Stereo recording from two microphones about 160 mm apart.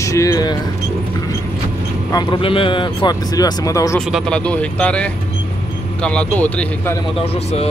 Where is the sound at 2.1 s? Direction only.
30° left (ahead or behind).